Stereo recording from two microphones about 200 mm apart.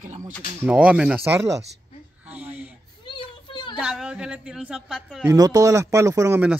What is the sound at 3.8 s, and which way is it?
A woman's voice, 5° right (ahead or behind).